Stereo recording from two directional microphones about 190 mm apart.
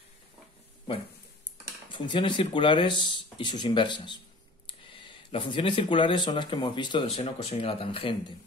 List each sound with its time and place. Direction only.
1.9 s speech: 25° left (ahead or behind)